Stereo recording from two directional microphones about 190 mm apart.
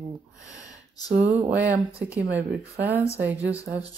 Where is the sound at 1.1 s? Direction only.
5° right (ahead or behind).